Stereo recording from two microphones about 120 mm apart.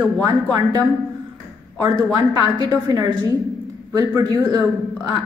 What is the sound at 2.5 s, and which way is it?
A woman's voice, 30° right (ahead or behind).